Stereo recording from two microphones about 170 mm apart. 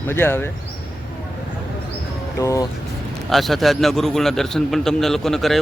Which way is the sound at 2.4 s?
20° left (ahead or behind).